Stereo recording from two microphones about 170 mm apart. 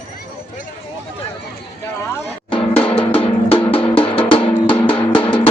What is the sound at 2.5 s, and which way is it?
Drum, 30° left (ahead or behind).